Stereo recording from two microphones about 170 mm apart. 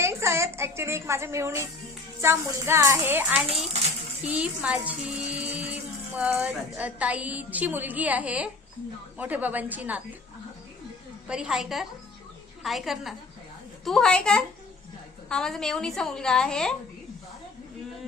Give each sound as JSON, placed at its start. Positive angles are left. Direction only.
{"t": 0.0, "sound": "a woman's voice", "side_deg": -15}
{"t": 4.3, "sound": "music", "side_deg": -10}
{"t": 6.1, "sound": "a woman's voice", "side_deg": -5}
{"t": 11.3, "sound": "a woman's voice", "side_deg": -5}